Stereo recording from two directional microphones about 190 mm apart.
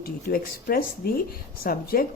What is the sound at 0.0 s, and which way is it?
Speech, 50° left (ahead or behind).